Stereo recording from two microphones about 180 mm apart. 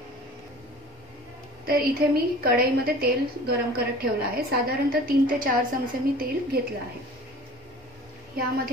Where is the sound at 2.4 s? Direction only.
55° right (ahead or behind).